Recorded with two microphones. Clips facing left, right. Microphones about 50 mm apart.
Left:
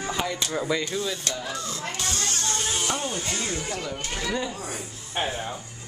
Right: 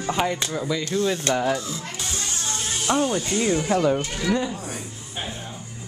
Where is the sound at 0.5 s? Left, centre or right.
Centre.